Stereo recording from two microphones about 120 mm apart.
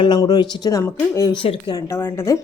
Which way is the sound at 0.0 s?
35° left (ahead or behind).